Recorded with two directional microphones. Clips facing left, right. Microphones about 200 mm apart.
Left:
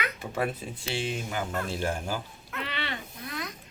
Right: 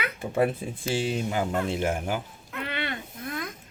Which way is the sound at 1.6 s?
20° right (ahead or behind).